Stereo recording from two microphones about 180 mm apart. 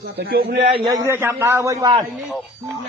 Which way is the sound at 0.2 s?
55° right (ahead or behind).